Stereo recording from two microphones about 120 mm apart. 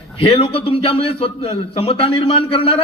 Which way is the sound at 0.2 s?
50° left (ahead or behind).